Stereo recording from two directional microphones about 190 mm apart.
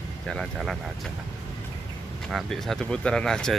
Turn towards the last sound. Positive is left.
turn(degrees=5)  # may be behind; listen again after turning